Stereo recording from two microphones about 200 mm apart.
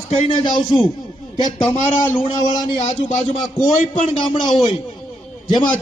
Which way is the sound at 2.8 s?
30° left (ahead or behind).